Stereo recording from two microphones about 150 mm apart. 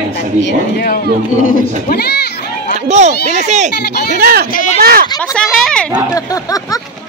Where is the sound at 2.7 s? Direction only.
50° right (ahead or behind).